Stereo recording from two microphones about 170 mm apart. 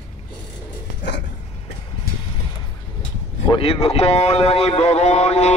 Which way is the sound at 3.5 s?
35° left (ahead or behind).